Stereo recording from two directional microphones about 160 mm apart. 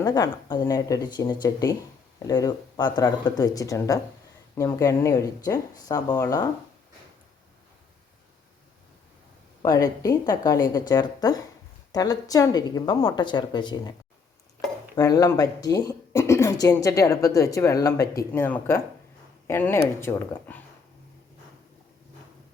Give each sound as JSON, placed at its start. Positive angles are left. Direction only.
{"t": 0.0, "sound": "speech", "side_deg": 25}
{"t": 9.6, "sound": "speech", "side_deg": 20}
{"t": 14.9, "sound": "speech", "side_deg": 25}